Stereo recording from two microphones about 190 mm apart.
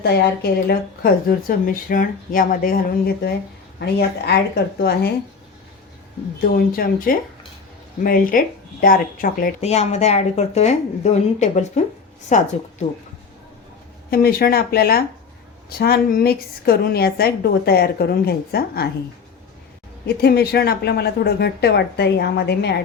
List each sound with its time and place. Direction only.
0.7 s a woman's voice: 50° left (ahead or behind)
6.4 s speech: 50° left (ahead or behind)
9.6 s a woman's voice: 35° left (ahead or behind)
14.1 s a woman's voice: 50° left (ahead or behind)
20.1 s a woman's voice: 55° left (ahead or behind)